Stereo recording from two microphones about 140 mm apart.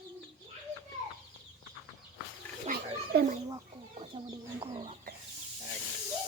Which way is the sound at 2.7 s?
75° right (ahead or behind).